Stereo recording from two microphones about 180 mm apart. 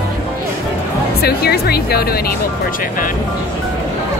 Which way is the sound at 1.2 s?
60° left (ahead or behind).